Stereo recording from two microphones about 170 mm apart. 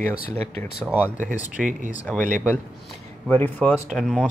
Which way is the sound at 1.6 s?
50° right (ahead or behind).